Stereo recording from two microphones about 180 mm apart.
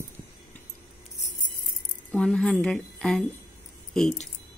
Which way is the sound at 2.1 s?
5° left (ahead or behind).